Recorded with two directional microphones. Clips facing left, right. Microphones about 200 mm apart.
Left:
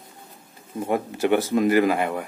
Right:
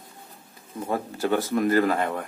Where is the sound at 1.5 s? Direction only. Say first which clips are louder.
Even; 15° left (ahead or behind).